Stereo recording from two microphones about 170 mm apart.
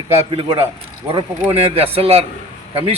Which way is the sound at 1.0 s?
35° right (ahead or behind).